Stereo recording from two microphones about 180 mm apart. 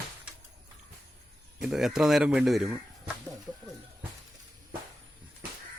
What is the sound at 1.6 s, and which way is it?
Speech, centre (ahead or behind).